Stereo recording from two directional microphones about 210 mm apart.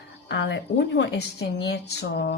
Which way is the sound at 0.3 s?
55° left (ahead or behind).